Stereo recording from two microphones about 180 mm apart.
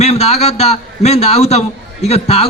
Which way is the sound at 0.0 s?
35° left (ahead or behind).